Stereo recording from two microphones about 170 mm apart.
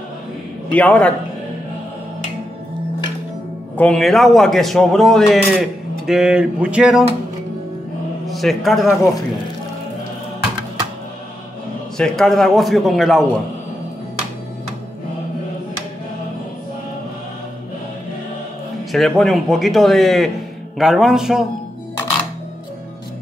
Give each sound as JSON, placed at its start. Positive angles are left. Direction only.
{"t": 0.7, "sound": "a man's voice", "side_deg": 10}
{"t": 3.7, "sound": "a man's voice", "side_deg": 5}
{"t": 8.3, "sound": "a man's voice", "side_deg": 0}
{"t": 12.0, "sound": "a man's voice", "side_deg": 0}
{"t": 18.9, "sound": "a man's voice", "side_deg": 0}